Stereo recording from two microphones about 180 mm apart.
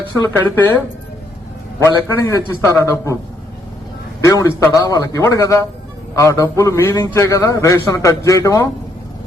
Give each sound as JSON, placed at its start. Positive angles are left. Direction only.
{"t": 0.3, "sound": "a man's voice", "side_deg": 10}
{"t": 1.8, "sound": "a man's voice", "side_deg": 15}
{"t": 4.2, "sound": "a man's voice", "side_deg": 15}